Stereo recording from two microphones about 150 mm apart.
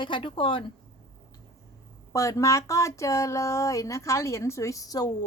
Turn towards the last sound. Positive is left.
turn(degrees=25)  # may be behind; listen again after turning